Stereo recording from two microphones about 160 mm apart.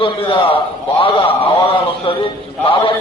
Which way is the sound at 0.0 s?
35° left (ahead or behind).